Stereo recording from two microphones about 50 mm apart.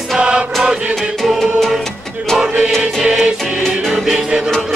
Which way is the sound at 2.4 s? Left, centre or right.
Right.